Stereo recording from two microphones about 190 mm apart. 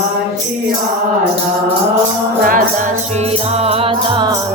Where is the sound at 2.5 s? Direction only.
45° right (ahead or behind).